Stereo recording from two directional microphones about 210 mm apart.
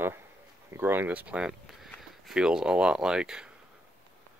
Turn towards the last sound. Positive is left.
turn(degrees=-5)  # may be behind; listen again after turning